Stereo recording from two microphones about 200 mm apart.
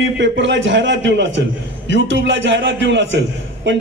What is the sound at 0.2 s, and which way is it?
A man's voice, 65° right (ahead or behind).